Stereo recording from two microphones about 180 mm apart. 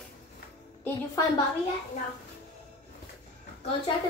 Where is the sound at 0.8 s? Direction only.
20° left (ahead or behind).